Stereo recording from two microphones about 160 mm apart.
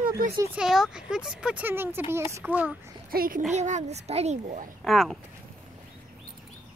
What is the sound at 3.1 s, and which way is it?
Speech, 65° right (ahead or behind).